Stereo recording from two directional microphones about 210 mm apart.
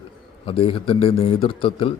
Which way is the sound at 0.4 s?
25° left (ahead or behind).